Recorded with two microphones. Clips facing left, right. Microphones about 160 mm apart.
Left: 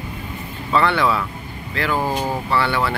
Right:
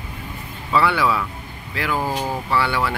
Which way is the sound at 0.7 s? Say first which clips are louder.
Left 1 dB; 10° right (ahead or behind).